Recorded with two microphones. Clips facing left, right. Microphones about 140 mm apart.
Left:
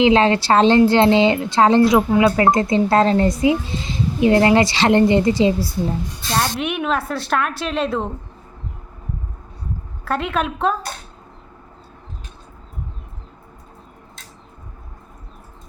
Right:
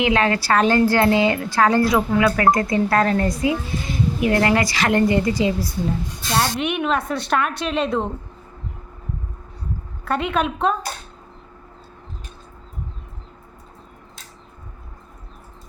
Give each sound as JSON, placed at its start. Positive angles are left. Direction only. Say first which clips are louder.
{"t": 0.0, "sound": "a woman's voice", "louder": "left 5 dB", "side_deg": 25}
{"t": 6.3, "sound": "a woman's voice", "louder": "even", "side_deg": 0}
{"t": 10.0, "sound": "a woman's voice", "louder": "even", "side_deg": 0}